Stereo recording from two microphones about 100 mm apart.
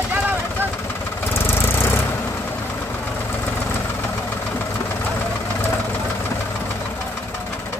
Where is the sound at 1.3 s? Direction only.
25° left (ahead or behind).